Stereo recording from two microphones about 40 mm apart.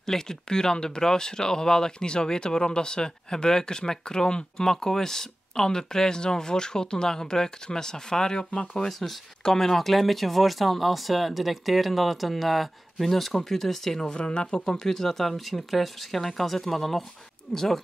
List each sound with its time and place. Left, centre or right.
0.0 s speech: centre
14.0 s speech: left
14.8 s speech: centre
17.5 s speech: centre